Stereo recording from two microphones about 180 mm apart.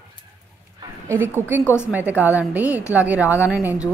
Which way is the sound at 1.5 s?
10° right (ahead or behind).